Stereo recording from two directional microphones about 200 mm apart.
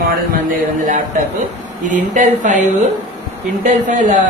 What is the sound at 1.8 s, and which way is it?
Speech, 40° right (ahead or behind).